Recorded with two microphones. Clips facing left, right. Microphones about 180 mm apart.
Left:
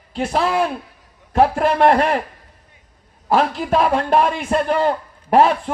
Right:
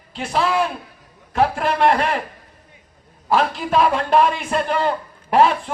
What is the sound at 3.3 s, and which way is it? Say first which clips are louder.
A man's voice: left 1 dB; 45° left (ahead or behind).